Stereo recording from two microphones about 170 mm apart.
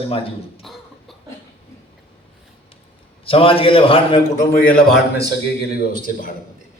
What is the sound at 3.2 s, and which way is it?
Speech, 35° left (ahead or behind).